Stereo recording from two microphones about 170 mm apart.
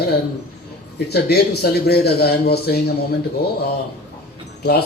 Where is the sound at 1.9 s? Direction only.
70° left (ahead or behind).